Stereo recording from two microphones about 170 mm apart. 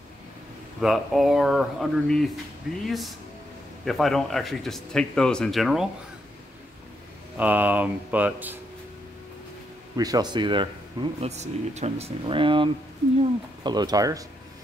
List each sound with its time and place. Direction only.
0.7 s speech: centre (ahead or behind)
7.3 s speech: 10° right (ahead or behind)
9.9 s speech: 20° right (ahead or behind)
11.2 s speech: 40° right (ahead or behind); by 14.2 s 20° right (ahead or behind)